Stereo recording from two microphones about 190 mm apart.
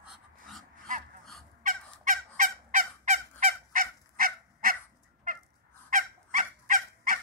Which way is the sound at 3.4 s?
45° right (ahead or behind).